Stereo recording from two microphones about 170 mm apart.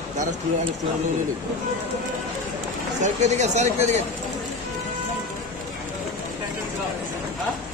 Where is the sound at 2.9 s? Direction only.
45° right (ahead or behind).